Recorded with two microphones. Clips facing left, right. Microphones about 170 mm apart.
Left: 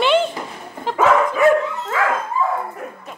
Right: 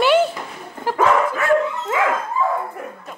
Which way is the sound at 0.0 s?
10° right (ahead or behind).